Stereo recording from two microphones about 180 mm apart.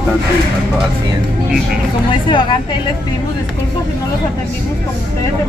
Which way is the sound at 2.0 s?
25° left (ahead or behind).